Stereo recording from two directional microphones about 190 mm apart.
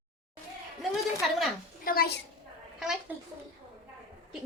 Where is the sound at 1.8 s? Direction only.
50° left (ahead or behind).